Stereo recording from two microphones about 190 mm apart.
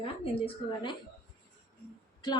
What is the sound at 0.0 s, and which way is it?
Speech, 30° left (ahead or behind).